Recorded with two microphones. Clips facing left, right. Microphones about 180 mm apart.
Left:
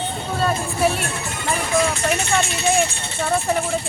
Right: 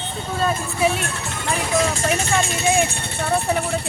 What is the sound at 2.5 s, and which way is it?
Speech, 55° right (ahead or behind).